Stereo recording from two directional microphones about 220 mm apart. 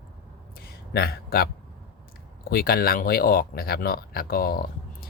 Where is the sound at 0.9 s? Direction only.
45° left (ahead or behind).